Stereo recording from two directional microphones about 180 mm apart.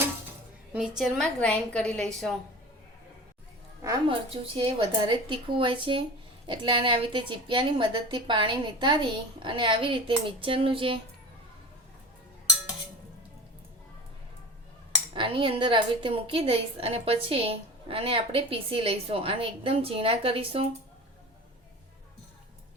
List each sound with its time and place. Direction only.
0.7 s a woman's voice: centre (ahead or behind)
3.8 s a woman's voice: 25° right (ahead or behind)
15.1 s a woman's voice: 30° right (ahead or behind)